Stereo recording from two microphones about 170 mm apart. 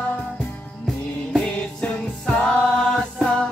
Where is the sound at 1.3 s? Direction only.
5° left (ahead or behind).